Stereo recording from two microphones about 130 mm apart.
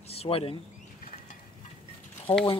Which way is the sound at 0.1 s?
50° left (ahead or behind).